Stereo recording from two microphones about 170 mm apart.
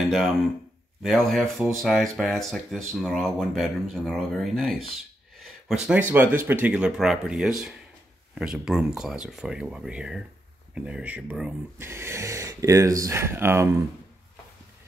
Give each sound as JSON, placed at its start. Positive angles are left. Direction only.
{"t": 1.0, "sound": "speech", "side_deg": 0}